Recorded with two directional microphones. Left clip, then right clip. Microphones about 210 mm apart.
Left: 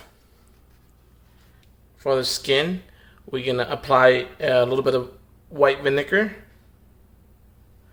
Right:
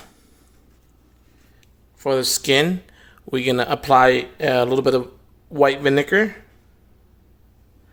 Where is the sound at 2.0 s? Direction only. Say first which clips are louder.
Right 2 dB; 45° right (ahead or behind).